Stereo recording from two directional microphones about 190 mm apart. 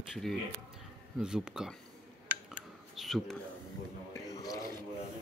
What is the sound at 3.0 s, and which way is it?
Speech, centre (ahead or behind).